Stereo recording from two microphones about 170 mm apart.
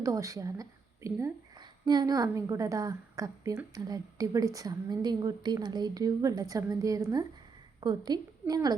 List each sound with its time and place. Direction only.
0.0 s a woman's voice: 20° right (ahead or behind)